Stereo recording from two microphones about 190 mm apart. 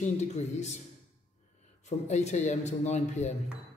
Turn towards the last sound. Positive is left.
turn(degrees=35)  # may be behind; listen again after turning